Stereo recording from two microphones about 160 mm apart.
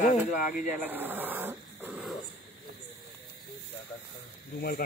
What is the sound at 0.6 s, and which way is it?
Speech, 10° right (ahead or behind).